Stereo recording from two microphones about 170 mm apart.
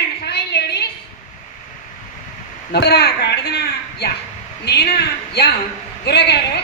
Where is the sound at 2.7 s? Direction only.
75° left (ahead or behind).